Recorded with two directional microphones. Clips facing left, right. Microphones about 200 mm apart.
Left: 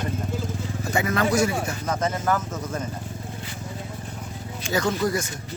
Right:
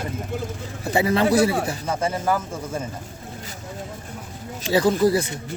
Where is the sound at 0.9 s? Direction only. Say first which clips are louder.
Right 4 dB; 30° right (ahead or behind).